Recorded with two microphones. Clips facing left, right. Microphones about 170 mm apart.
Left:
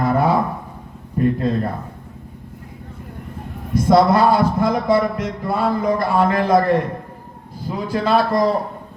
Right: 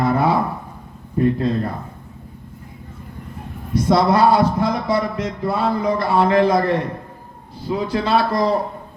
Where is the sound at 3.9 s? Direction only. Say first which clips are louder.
Left 1 dB; 50° left (ahead or behind).